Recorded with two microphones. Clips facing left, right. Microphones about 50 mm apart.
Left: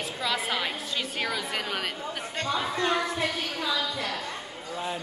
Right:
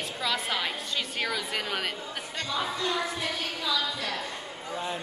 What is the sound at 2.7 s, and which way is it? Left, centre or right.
A woman's voice, left.